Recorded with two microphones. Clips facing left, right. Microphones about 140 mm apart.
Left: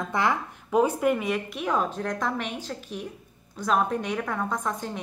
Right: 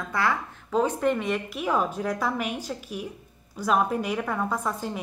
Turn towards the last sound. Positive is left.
turn(degrees=-5)  # may be behind; listen again after turning